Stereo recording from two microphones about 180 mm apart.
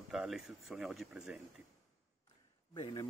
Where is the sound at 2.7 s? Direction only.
25° left (ahead or behind).